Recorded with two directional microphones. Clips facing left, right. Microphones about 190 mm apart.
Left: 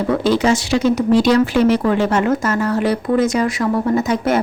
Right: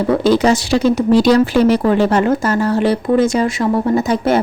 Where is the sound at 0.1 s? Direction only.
40° right (ahead or behind).